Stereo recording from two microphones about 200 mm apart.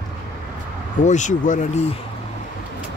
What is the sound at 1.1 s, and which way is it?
Speech, 35° left (ahead or behind).